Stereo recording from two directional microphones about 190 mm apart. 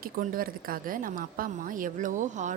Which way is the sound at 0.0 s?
50° right (ahead or behind).